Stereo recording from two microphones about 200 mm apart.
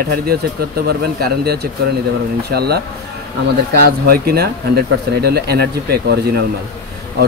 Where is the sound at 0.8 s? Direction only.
50° right (ahead or behind).